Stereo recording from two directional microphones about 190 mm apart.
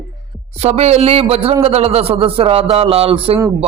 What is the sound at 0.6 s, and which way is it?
A man's voice, 35° right (ahead or behind).